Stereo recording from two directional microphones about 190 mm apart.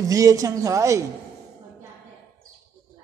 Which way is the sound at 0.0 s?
20° right (ahead or behind).